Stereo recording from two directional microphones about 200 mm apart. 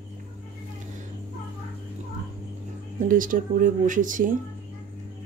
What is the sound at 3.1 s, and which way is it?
Speech, 45° right (ahead or behind).